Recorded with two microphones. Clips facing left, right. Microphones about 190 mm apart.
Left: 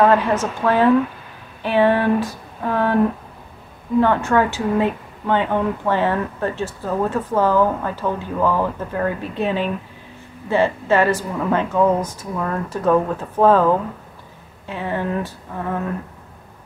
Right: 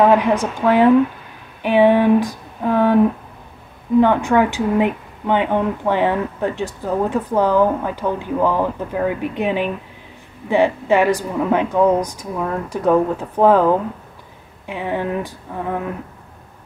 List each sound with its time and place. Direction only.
0.0 s a woman's voice: 15° right (ahead or behind)
4.0 s a woman's voice: 15° right (ahead or behind)